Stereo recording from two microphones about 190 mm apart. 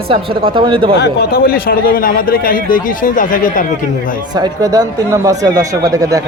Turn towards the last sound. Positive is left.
turn(degrees=-20)  # may be behind; listen again after turning